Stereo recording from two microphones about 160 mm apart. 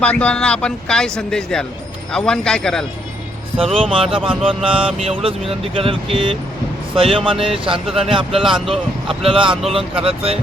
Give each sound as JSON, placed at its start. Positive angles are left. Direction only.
{"t": 0.0, "sound": "speech", "side_deg": 10}
{"t": 3.6, "sound": "speech", "side_deg": -35}